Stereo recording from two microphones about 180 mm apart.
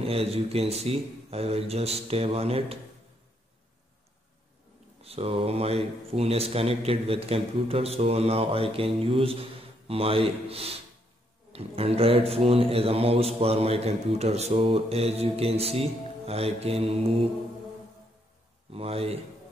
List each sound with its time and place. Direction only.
0.0 s speech: 35° right (ahead or behind)
5.0 s speech: 35° right (ahead or behind)
18.7 s speech: 35° right (ahead or behind)